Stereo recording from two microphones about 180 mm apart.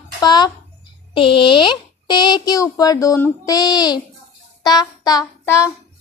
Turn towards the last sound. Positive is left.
turn(degrees=20)  # may be behind; listen again after turning